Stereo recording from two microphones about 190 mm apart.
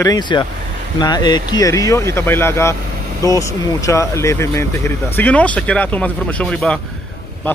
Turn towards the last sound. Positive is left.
turn(degrees=5)  # may be behind; listen again after turning